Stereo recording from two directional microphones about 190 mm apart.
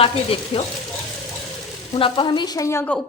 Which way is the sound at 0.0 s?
30° left (ahead or behind).